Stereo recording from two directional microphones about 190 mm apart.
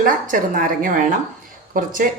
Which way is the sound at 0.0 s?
45° right (ahead or behind).